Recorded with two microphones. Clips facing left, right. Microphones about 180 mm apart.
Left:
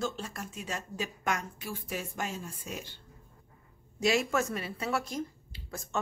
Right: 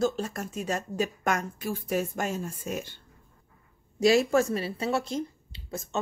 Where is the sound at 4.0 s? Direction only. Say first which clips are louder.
Right 7 dB; 35° right (ahead or behind).